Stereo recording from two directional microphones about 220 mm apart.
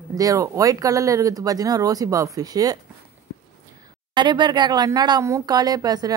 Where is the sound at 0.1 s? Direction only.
15° right (ahead or behind).